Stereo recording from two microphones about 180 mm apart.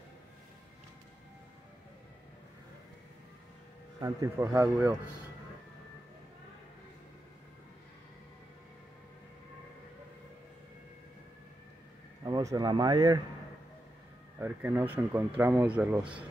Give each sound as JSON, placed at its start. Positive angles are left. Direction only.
{"t": 4.0, "sound": "speech", "side_deg": -15}
{"t": 12.3, "sound": "speech", "side_deg": -20}
{"t": 14.4, "sound": "speech", "side_deg": -10}